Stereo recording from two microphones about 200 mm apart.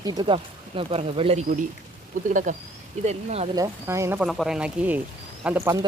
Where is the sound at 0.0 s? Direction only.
20° right (ahead or behind).